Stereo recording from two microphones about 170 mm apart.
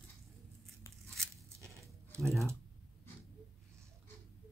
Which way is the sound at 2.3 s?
15° right (ahead or behind).